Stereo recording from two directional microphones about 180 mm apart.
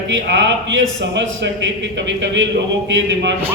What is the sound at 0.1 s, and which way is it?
A man's voice, 90° right.